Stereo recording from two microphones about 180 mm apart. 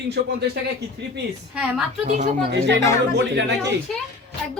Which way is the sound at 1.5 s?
5° right (ahead or behind).